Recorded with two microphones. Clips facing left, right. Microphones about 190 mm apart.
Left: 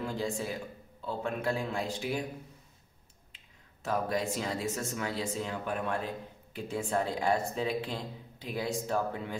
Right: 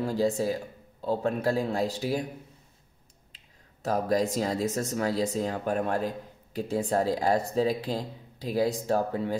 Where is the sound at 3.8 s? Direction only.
40° right (ahead or behind).